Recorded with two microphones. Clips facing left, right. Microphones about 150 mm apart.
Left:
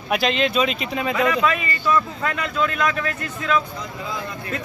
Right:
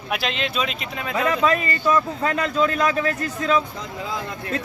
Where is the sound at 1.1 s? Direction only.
35° right (ahead or behind).